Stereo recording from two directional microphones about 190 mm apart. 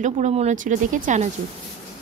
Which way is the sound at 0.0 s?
35° right (ahead or behind).